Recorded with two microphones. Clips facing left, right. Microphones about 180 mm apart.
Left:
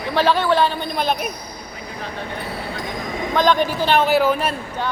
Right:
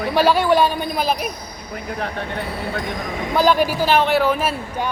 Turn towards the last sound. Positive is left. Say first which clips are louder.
# right 1 dB
turn(degrees=-5)  # may be behind; listen again after turning